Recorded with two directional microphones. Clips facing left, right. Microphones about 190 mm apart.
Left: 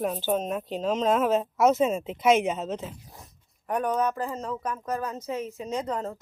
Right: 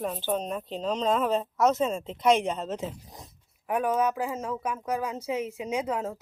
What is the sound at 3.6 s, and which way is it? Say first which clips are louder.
Speech: even; 5° right (ahead or behind).